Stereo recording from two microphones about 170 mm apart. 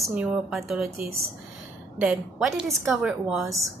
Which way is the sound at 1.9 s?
5° right (ahead or behind).